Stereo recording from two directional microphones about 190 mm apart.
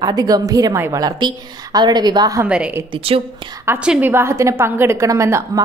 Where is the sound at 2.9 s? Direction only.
30° right (ahead or behind).